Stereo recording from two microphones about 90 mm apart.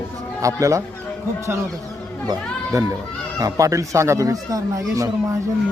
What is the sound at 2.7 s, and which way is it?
A man's voice, 40° right (ahead or behind).